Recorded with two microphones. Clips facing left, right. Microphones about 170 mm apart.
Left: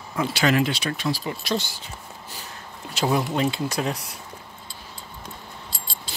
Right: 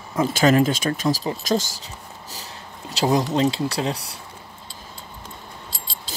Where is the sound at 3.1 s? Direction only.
35° right (ahead or behind).